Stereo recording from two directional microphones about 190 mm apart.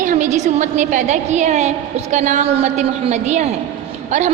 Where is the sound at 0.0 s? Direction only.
40° right (ahead or behind).